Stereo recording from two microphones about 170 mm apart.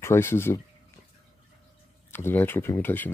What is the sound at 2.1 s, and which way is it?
Speech, 15° left (ahead or behind).